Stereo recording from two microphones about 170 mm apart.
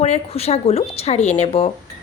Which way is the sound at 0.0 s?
40° left (ahead or behind).